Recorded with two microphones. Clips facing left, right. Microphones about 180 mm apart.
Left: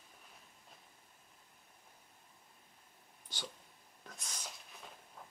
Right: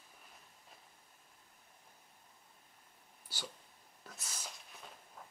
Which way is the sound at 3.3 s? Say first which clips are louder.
Even; 5° right (ahead or behind).